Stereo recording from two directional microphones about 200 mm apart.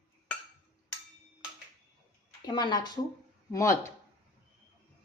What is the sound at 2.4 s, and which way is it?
Speech, 20° left (ahead or behind).